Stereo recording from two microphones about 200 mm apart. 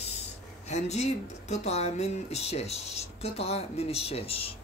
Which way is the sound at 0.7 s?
35° left (ahead or behind).